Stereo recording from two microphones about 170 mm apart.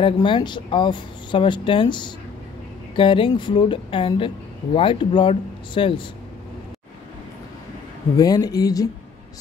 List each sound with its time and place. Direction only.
0.0 s speech: 30° left (ahead or behind)
8.2 s speech: 20° left (ahead or behind)